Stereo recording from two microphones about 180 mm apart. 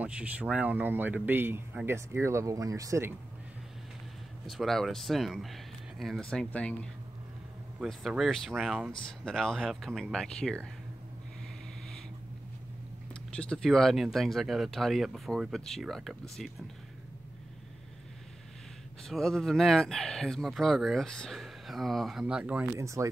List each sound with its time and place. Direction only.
0.0 s speech: 5° right (ahead or behind)
4.5 s speech: centre (ahead or behind)
13.1 s speech: 5° left (ahead or behind)
19.0 s speech: centre (ahead or behind); by 23.0 s 15° right (ahead or behind)